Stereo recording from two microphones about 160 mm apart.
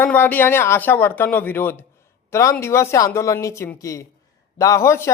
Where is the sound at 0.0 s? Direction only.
10° left (ahead or behind).